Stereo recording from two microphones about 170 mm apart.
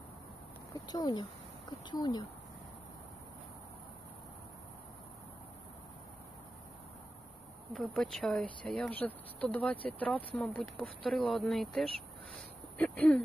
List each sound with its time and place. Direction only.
0.9 s speech: 25° left (ahead or behind)
7.7 s speech: centre (ahead or behind)